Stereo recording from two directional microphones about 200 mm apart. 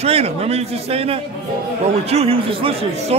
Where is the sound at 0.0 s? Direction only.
30° right (ahead or behind).